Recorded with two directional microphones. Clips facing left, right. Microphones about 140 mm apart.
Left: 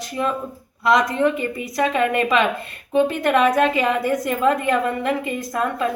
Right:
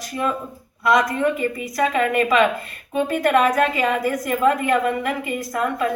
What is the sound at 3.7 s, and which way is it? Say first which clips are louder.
A woman's voice: left 1 dB; 25° left (ahead or behind).